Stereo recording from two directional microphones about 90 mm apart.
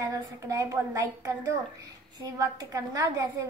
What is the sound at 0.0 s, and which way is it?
A woman's voice, 40° right (ahead or behind).